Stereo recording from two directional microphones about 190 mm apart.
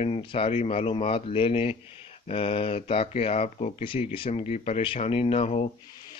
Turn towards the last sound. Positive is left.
turn(degrees=30)  # may be behind; listen again after turning